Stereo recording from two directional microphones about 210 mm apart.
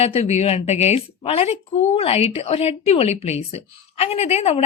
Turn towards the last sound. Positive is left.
turn(degrees=30)  # may be behind; listen again after turning